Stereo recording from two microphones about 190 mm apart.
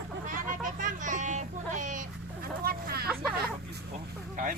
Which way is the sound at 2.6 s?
55° right (ahead or behind).